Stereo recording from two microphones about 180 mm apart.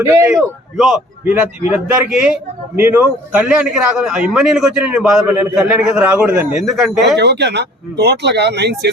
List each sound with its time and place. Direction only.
0.0 s a man's voice: 15° right (ahead or behind)
0.8 s a man's voice: centre (ahead or behind)
7.2 s speech: 70° right (ahead or behind)